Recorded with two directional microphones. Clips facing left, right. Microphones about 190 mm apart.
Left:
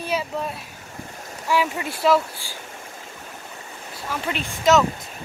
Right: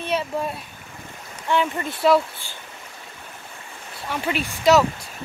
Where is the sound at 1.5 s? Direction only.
5° left (ahead or behind).